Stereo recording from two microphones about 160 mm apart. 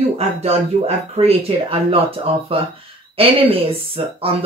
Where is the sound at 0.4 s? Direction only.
40° right (ahead or behind).